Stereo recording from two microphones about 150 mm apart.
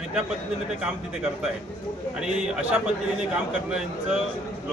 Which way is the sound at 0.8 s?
5° right (ahead or behind).